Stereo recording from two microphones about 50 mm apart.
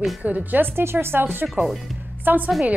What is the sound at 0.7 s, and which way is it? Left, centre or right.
Speech, right.